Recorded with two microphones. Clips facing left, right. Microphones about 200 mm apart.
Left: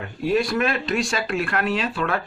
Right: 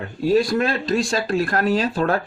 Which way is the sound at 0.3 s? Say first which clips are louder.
Right 3 dB; 30° right (ahead or behind).